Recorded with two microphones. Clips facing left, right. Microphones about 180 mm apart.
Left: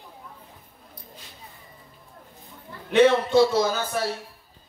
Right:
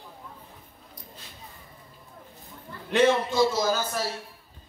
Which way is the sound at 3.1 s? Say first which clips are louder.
Left 4 dB; 65° left (ahead or behind).